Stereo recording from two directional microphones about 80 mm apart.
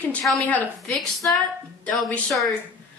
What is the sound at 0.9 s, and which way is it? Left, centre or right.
Speech, centre.